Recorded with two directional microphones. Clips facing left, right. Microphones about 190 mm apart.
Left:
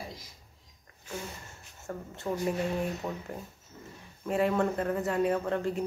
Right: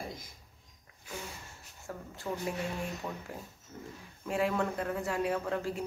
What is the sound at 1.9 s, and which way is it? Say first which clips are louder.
Speech: left 4 dB; centre (ahead or behind).